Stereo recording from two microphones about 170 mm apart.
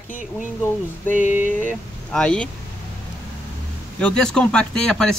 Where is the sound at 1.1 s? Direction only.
50° left (ahead or behind).